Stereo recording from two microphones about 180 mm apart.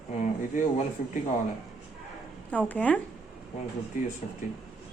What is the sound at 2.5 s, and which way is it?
Speech, 5° left (ahead or behind).